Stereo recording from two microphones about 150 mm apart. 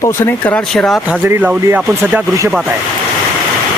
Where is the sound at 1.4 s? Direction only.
10° right (ahead or behind).